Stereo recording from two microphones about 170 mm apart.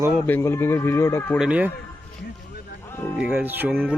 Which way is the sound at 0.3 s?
15° left (ahead or behind).